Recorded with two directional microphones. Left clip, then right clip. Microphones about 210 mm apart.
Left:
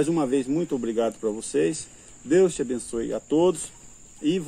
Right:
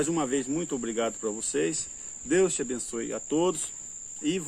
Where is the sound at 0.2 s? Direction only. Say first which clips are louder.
Left 5 dB; centre (ahead or behind).